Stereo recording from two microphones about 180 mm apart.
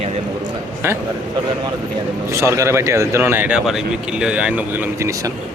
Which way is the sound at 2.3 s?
15° right (ahead or behind).